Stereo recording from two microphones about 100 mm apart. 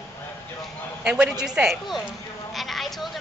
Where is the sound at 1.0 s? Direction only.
10° right (ahead or behind).